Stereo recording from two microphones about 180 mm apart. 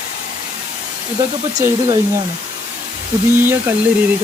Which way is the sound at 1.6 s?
15° right (ahead or behind).